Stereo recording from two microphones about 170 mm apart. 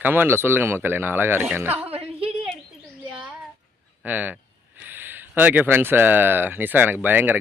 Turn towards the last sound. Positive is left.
turn(degrees=-10)  # may be behind; listen again after turning